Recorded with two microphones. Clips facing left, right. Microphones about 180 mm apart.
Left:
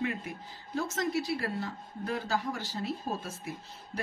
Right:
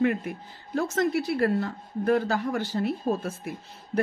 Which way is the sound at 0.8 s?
55° right (ahead or behind).